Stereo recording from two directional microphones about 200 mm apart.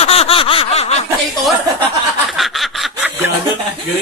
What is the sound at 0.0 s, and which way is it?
Snicker, 30° left (ahead or behind).